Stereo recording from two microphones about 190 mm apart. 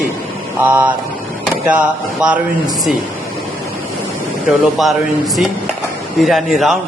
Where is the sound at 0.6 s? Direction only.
10° right (ahead or behind).